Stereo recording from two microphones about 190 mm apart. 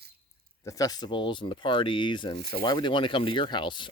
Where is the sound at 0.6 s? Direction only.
15° left (ahead or behind).